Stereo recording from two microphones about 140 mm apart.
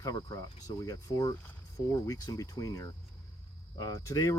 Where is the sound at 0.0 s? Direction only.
25° left (ahead or behind).